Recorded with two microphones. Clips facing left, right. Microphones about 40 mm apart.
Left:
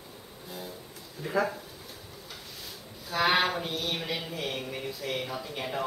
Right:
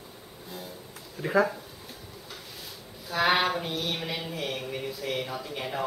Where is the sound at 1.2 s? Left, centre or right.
Centre.